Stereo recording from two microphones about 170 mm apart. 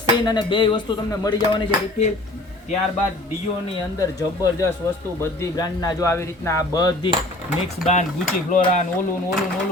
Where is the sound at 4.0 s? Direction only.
20° left (ahead or behind).